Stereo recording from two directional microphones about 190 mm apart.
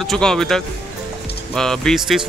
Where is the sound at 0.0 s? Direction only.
Centre (ahead or behind).